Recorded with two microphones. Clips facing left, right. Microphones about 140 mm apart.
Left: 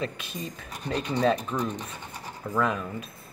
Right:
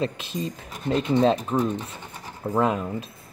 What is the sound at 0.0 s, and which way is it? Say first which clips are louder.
Speech: right 6 dB; 30° right (ahead or behind).